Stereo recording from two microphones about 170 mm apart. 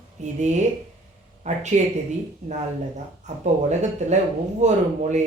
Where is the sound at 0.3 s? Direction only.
45° right (ahead or behind).